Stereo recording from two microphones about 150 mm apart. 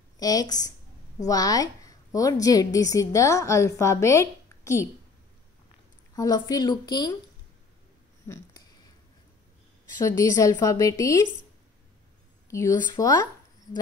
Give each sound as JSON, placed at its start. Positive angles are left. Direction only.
{"t": 0.2, "sound": "a woman's voice", "side_deg": 25}
{"t": 6.1, "sound": "a woman's voice", "side_deg": 25}
{"t": 8.3, "sound": "a sound", "side_deg": 25}
{"t": 10.0, "sound": "a woman's voice", "side_deg": 20}
{"t": 12.4, "sound": "a woman's voice", "side_deg": 20}